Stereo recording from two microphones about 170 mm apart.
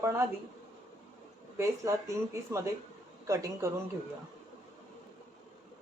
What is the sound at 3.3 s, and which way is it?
Speech, 20° right (ahead or behind).